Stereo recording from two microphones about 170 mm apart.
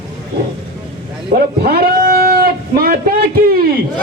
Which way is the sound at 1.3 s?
70° right (ahead or behind).